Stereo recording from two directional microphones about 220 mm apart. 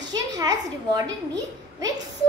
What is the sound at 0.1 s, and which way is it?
A child's voice, 15° right (ahead or behind).